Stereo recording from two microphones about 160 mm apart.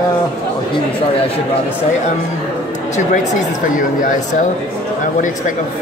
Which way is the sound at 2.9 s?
50° left (ahead or behind).